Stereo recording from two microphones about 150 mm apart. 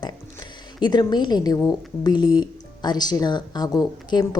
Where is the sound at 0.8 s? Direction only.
30° left (ahead or behind).